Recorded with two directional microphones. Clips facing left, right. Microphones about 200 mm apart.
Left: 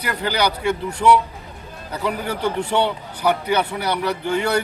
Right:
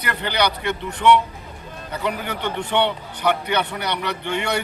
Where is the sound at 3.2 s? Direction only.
5° left (ahead or behind).